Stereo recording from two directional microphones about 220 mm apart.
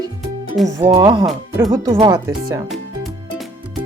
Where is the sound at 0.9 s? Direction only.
20° right (ahead or behind).